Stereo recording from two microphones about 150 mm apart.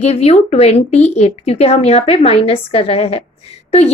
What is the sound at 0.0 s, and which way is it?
A woman's voice, 45° left (ahead or behind).